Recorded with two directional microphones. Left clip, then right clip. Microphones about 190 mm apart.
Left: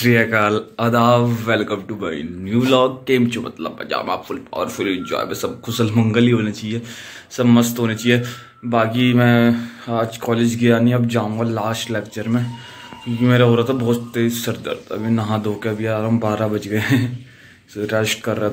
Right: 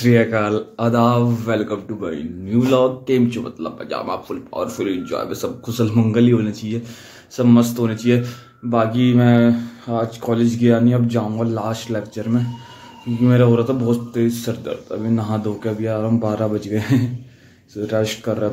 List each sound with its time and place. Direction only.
0.0 s speech: centre (ahead or behind)